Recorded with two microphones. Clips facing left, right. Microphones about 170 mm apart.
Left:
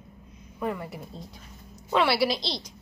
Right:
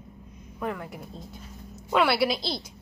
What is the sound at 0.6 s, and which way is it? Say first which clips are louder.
A woman's voice: left 1 dB; centre (ahead or behind).